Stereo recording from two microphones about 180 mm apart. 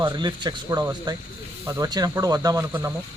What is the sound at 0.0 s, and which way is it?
Speech, 25° right (ahead or behind).